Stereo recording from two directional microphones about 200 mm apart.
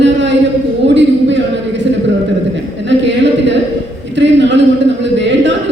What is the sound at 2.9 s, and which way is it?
A man's voice, 65° right (ahead or behind).